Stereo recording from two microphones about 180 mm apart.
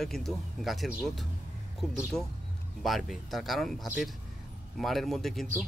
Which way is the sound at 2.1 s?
20° left (ahead or behind).